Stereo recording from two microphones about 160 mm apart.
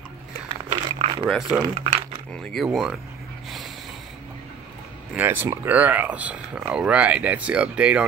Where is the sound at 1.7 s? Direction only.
40° right (ahead or behind).